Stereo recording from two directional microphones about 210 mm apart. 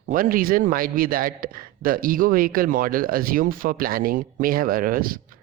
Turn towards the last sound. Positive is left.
turn(degrees=-45)  # may be behind; listen again after turning